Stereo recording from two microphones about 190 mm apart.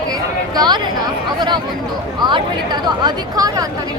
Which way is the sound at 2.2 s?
25° right (ahead or behind).